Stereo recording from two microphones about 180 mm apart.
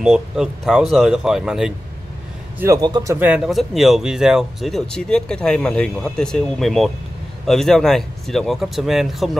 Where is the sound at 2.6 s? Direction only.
20° right (ahead or behind).